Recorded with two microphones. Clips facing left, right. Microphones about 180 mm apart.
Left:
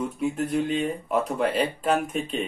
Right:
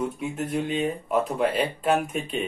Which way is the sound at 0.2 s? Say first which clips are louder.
Left 3 dB; centre (ahead or behind).